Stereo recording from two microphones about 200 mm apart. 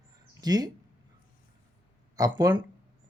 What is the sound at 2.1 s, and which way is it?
Speech, 20° right (ahead or behind).